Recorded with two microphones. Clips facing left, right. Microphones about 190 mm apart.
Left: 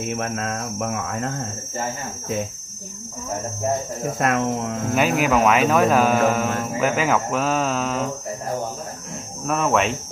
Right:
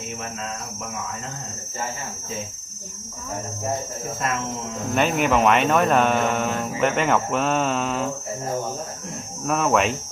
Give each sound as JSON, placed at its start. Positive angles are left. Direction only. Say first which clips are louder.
{"t": 0.2, "sound": "speech", "louder": "left 6 dB", "side_deg": 55}
{"t": 4.2, "sound": "speech", "louder": "left 7 dB", "side_deg": 55}
{"t": 4.9, "sound": "speech", "louder": "left 1 dB", "side_deg": 5}
{"t": 9.4, "sound": "speech", "louder": "even", "side_deg": 0}